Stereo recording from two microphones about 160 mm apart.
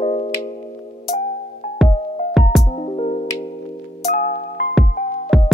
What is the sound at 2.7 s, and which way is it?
Music, 35° left (ahead or behind).